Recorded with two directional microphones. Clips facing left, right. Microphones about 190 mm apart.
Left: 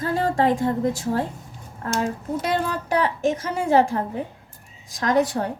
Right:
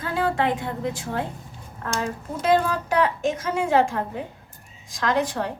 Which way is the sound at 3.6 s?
35° left (ahead or behind).